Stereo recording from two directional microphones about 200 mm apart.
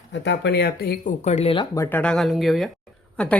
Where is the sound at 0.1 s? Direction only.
60° left (ahead or behind); by 1.6 s 30° left (ahead or behind).